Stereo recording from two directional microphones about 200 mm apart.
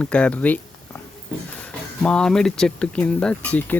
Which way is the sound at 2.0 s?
5° left (ahead or behind).